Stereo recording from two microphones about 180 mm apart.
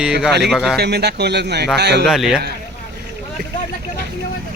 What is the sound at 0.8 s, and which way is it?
A man's voice, 65° right (ahead or behind).